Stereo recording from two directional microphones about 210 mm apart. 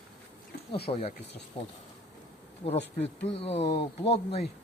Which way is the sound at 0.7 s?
25° left (ahead or behind).